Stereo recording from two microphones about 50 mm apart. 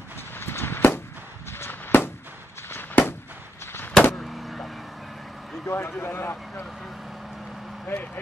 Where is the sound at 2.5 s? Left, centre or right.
Left.